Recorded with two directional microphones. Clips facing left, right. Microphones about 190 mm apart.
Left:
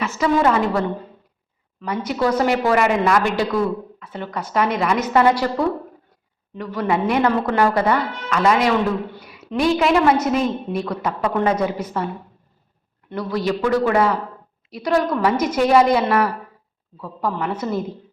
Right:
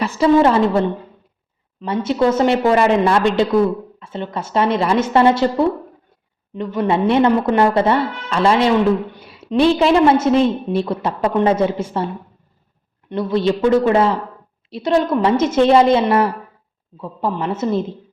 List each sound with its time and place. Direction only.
0.0 s a woman's voice: 30° right (ahead or behind)
13.1 s a woman's voice: 25° right (ahead or behind)